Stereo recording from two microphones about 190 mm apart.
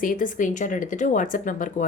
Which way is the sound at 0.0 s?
45° left (ahead or behind).